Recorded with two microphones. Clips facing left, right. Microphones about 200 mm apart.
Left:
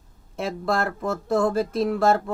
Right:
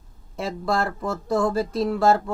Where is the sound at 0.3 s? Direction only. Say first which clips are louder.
Even; 55° left (ahead or behind).